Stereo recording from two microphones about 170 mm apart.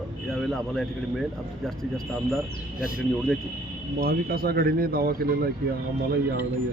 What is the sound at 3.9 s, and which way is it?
Speech, 60° right (ahead or behind).